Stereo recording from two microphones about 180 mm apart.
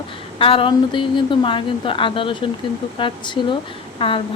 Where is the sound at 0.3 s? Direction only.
30° left (ahead or behind).